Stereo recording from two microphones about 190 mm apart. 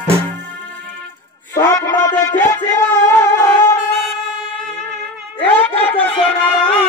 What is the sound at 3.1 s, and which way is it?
Wind instrument, 15° left (ahead or behind).